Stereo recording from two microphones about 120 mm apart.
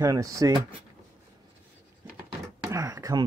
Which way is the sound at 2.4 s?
25° right (ahead or behind).